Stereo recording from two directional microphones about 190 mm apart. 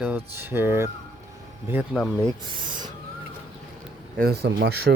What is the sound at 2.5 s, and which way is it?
Speech, 25° right (ahead or behind).